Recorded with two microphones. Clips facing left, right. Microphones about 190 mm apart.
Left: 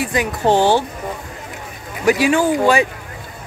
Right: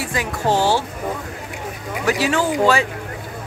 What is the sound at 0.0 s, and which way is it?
Speech, 20° left (ahead or behind).